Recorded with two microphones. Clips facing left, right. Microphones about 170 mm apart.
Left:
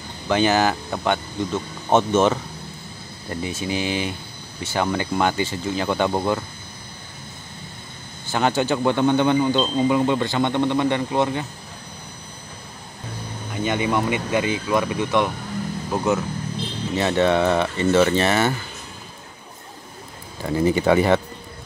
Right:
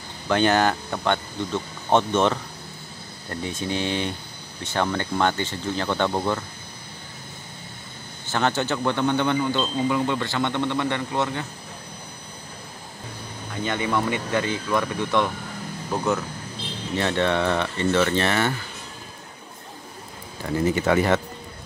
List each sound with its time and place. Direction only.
0.3 s speech: 5° left (ahead or behind)
8.3 s speech: 15° left (ahead or behind)
13.7 s speech: 15° left (ahead or behind)
20.6 s speech: 15° left (ahead or behind)